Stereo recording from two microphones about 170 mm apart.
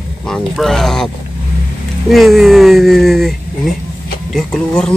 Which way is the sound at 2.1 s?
Centre (ahead or behind).